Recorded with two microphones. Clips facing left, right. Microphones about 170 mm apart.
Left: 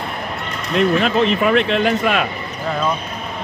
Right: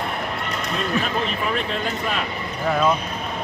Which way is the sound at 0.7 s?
75° left (ahead or behind).